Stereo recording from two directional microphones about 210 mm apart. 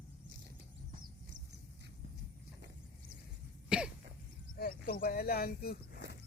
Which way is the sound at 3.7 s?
5° right (ahead or behind).